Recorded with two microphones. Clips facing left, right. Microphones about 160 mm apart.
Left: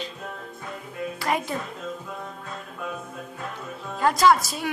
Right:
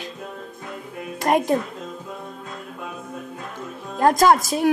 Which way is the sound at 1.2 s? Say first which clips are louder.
Right 9 dB; 45° right (ahead or behind).